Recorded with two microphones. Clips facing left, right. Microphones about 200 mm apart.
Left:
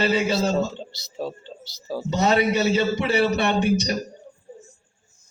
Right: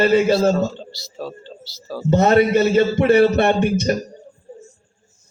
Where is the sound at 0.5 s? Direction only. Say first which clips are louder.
Right 3 dB; 20° left (ahead or behind).